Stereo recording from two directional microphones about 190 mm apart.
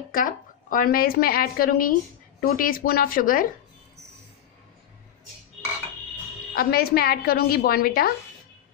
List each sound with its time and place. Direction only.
0.1 s speech: 45° left (ahead or behind)
6.5 s speech: 55° left (ahead or behind)